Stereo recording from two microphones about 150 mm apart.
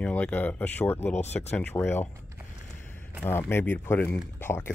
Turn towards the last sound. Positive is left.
turn(degrees=15)  # may be behind; listen again after turning